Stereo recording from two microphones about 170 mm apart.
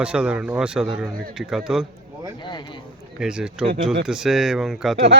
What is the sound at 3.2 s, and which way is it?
Speech, 5° right (ahead or behind).